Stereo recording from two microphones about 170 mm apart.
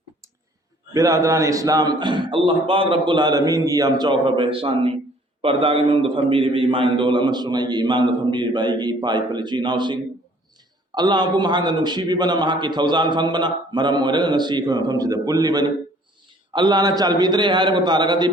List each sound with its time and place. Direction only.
0.9 s a man's voice: 20° right (ahead or behind)